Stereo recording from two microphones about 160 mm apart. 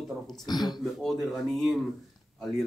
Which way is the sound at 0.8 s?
Centre (ahead or behind).